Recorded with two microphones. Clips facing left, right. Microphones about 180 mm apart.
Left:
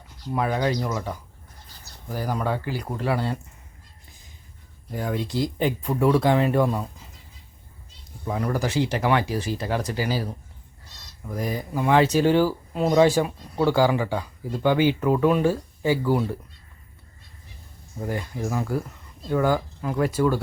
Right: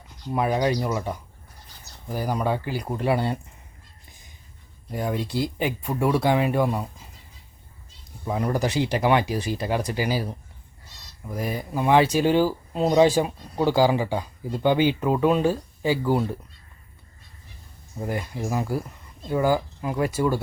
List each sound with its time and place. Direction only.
0.3 s speech: 15° right (ahead or behind)
4.9 s speech: 15° right (ahead or behind)
8.2 s speech: 15° right (ahead or behind)
11.4 s speech: 20° right (ahead or behind)
18.0 s speech: 15° right (ahead or behind)